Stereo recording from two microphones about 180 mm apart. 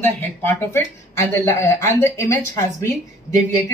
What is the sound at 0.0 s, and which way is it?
A woman's voice, 10° left (ahead or behind).